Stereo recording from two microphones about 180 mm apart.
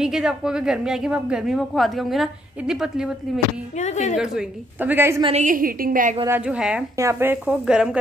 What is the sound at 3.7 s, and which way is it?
Speech, 40° left (ahead or behind).